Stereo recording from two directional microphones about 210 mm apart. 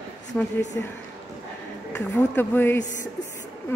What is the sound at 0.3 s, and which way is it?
Speech, 5° left (ahead or behind).